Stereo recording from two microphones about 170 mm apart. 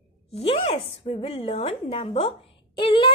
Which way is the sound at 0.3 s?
30° left (ahead or behind).